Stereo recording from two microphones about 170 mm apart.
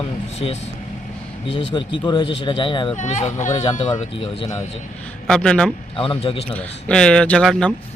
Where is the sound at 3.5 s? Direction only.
30° left (ahead or behind).